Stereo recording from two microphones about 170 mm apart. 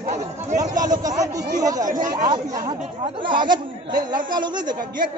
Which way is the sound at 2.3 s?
25° right (ahead or behind).